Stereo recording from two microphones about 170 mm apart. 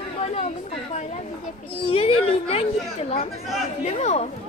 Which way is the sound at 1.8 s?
35° left (ahead or behind).